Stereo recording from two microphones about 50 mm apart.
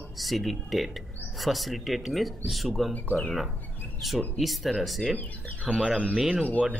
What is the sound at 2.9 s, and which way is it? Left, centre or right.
Speech, left.